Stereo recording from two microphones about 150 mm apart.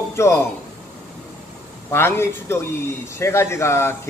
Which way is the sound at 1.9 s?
15° left (ahead or behind).